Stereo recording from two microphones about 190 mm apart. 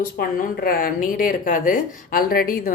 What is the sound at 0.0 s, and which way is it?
A woman's voice, 50° left (ahead or behind).